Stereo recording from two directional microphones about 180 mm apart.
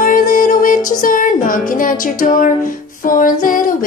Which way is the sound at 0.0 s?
50° left (ahead or behind).